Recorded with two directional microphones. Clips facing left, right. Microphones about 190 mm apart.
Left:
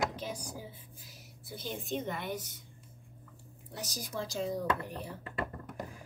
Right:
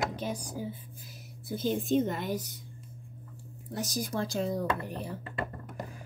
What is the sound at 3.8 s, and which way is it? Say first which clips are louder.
Speech: right 6 dB; 55° right (ahead or behind).